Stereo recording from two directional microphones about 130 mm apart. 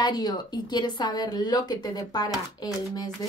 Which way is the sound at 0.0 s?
30° left (ahead or behind).